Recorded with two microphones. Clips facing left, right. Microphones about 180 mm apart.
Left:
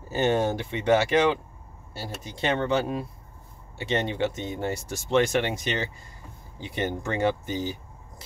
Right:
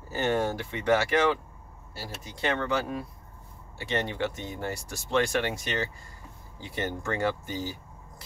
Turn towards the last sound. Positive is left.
turn(degrees=20)  # may be behind; listen again after turning